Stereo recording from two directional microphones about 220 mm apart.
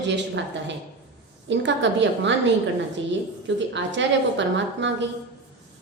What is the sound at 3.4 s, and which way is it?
A woman's voice, 55° right (ahead or behind).